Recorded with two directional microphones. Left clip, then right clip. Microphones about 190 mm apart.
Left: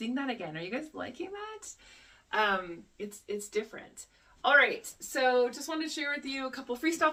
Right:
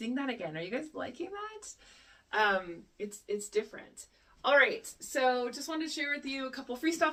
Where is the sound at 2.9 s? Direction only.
15° left (ahead or behind).